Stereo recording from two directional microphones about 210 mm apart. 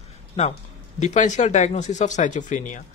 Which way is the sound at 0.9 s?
35° left (ahead or behind).